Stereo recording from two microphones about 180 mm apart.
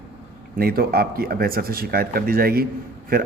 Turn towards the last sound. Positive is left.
turn(degrees=-55)  # may be behind; listen again after turning